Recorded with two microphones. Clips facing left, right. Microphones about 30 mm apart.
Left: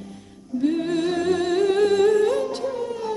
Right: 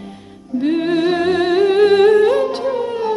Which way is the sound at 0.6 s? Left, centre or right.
Right.